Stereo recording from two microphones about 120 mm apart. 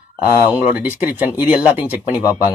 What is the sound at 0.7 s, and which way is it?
Speech, 15° right (ahead or behind).